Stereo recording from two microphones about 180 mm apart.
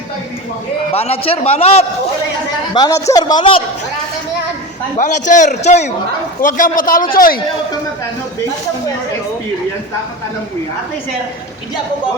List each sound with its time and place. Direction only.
0.9 s a man's voice: 35° left (ahead or behind)
2.7 s a man's voice: 20° left (ahead or behind)
4.9 s a man's voice: 45° left (ahead or behind)